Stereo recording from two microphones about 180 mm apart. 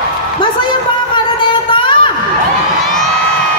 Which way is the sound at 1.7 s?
25° left (ahead or behind).